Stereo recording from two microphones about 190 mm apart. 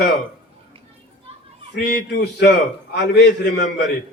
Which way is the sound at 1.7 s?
55° left (ahead or behind).